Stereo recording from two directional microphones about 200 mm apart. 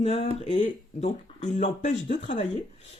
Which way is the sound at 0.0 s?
30° left (ahead or behind).